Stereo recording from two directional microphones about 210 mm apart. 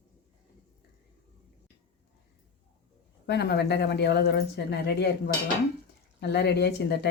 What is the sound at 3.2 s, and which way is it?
Speech, 55° left (ahead or behind).